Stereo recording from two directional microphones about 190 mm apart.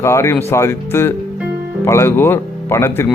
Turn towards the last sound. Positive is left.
turn(degrees=15)  # may be behind; listen again after turning